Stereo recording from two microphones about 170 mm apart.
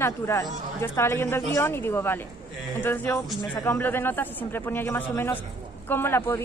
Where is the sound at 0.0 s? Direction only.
20° left (ahead or behind).